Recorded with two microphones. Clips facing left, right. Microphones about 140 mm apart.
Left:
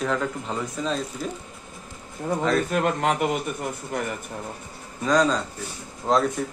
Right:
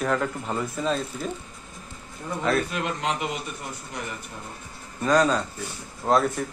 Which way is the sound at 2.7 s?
50° left (ahead or behind).